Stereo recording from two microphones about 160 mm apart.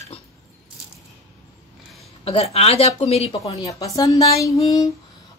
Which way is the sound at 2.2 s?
40° left (ahead or behind).